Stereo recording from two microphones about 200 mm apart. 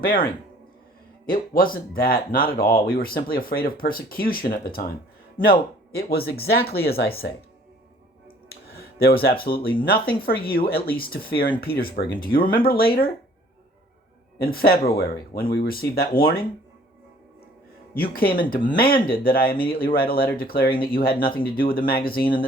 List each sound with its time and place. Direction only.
1.3 s speech: 45° left (ahead or behind)
8.4 s speech: 50° left (ahead or behind)
14.3 s speech: 50° left (ahead or behind)
17.9 s speech: 45° left (ahead or behind)
18.9 s speech: 25° left (ahead or behind)
19.2 s speech: 50° left (ahead or behind)